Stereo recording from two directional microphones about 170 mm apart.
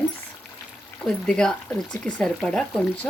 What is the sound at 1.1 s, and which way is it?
Speech, 5° left (ahead or behind).